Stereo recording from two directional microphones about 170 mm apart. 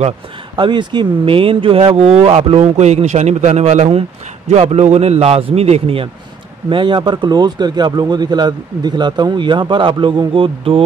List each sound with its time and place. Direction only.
0.6 s speech: 25° right (ahead or behind)